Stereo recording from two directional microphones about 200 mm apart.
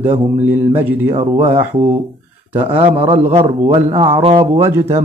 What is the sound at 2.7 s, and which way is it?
Speech, 30° right (ahead or behind).